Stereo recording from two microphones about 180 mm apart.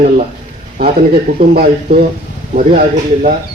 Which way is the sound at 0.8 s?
55° right (ahead or behind).